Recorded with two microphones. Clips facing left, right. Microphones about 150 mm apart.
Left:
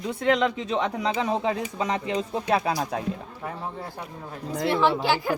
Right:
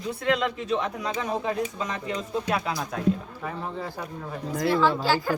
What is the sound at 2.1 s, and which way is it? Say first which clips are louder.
Speech: even; 30° left (ahead or behind).